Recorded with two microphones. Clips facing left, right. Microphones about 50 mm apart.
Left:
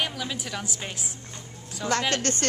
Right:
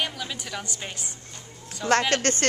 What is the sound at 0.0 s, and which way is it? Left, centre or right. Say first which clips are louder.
A woman's voice: left 1 dB; centre.